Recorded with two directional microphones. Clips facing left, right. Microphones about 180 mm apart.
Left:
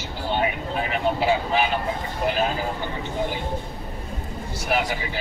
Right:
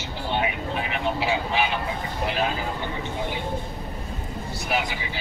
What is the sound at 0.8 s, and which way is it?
Vehicle, 40° left (ahead or behind).